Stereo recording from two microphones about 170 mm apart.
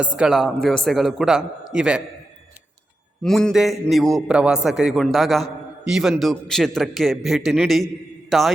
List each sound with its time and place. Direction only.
0.2 s a man's voice: centre (ahead or behind)
3.2 s a man's voice: centre (ahead or behind)